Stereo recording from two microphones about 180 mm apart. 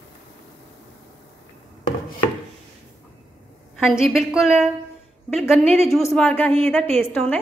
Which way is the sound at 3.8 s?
5° right (ahead or behind).